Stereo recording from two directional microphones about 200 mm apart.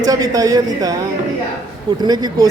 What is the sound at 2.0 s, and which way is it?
Speech, 20° right (ahead or behind).